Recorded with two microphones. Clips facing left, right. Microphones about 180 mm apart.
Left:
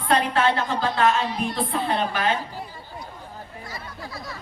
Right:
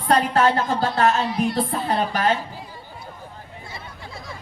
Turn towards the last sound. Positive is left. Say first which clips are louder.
# left 1 dB
turn(degrees=-25)  # may be behind; listen again after turning